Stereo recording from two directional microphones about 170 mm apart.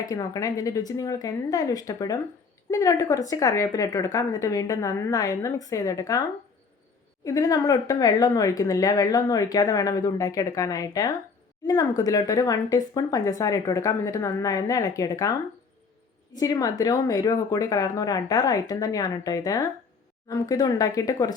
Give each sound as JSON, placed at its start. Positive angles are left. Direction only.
{"t": 0.0, "sound": "speech", "side_deg": 20}
{"t": 7.3, "sound": "speech", "side_deg": 20}